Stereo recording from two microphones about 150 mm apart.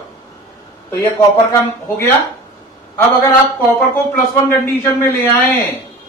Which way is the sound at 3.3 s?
15° left (ahead or behind).